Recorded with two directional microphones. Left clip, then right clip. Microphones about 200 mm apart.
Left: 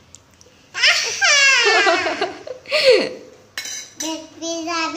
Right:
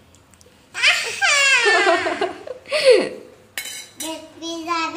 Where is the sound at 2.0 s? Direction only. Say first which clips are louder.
Left 1 dB; centre (ahead or behind).